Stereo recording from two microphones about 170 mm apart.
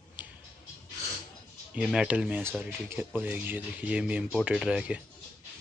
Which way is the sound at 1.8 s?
5° right (ahead or behind).